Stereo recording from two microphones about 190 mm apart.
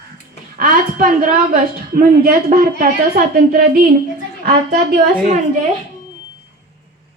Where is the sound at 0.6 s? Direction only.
45° right (ahead or behind).